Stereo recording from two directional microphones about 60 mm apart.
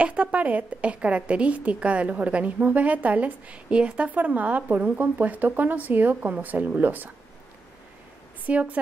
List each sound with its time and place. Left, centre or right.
0.0 s a woman's voice: right
8.5 s a woman's voice: right